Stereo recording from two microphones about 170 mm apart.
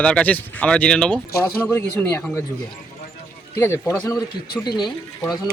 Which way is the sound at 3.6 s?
15° left (ahead or behind).